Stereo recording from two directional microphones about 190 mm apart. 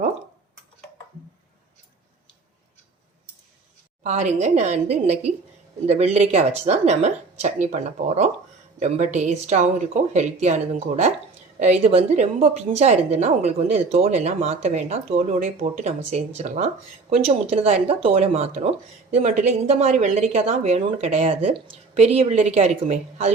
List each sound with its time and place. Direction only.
4.0 s a woman's voice: 35° right (ahead or behind)